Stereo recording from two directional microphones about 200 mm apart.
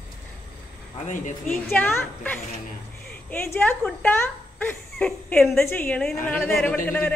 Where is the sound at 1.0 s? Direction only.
40° left (ahead or behind).